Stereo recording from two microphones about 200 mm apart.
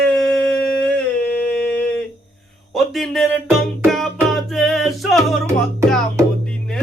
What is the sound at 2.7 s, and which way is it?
Music, centre (ahead or behind).